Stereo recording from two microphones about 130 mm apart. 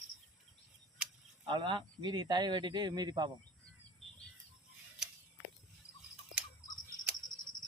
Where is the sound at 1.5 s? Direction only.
35° right (ahead or behind).